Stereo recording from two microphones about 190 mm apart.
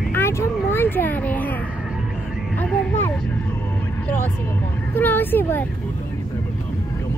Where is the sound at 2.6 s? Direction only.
5° left (ahead or behind).